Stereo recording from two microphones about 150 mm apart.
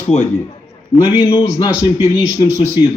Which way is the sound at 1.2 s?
30° left (ahead or behind).